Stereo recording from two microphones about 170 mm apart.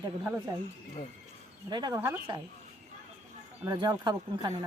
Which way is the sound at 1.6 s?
25° right (ahead or behind).